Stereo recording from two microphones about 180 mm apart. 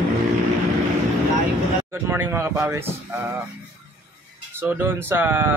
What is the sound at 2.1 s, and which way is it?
Speech, 10° right (ahead or behind).